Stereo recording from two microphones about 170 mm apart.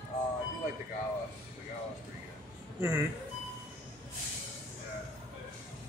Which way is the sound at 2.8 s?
10° right (ahead or behind).